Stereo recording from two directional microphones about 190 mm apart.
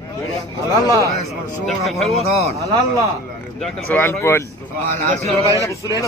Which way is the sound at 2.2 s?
35° right (ahead or behind).